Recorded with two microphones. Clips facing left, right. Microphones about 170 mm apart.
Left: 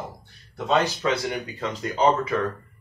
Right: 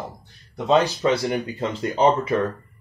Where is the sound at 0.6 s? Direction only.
30° right (ahead or behind).